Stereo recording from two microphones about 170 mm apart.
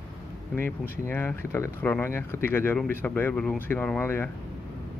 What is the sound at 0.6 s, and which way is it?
Speech, 10° left (ahead or behind).